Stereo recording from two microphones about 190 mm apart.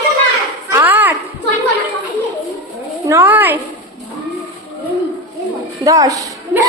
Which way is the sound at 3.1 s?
10° right (ahead or behind).